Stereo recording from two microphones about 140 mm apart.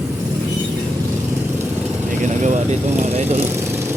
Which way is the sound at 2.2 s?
60° right (ahead or behind).